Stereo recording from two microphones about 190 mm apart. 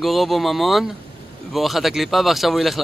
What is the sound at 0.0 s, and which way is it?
Speech, centre (ahead or behind).